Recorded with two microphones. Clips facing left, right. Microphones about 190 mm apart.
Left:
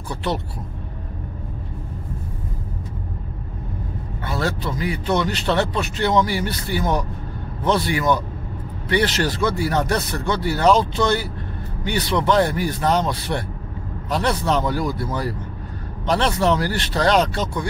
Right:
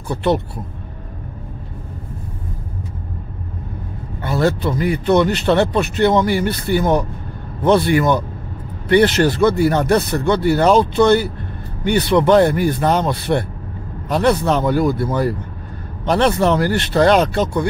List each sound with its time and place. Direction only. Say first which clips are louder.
0.1 s speech: right 8 dB; 55° right (ahead or behind)
4.3 s speech: right 7 dB; 55° right (ahead or behind)